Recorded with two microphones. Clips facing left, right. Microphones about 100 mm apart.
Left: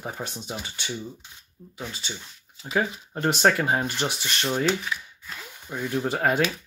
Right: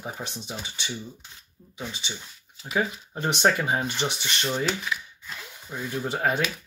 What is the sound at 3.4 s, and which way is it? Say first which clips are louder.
Speech: left 1 dB; 5° right (ahead or behind).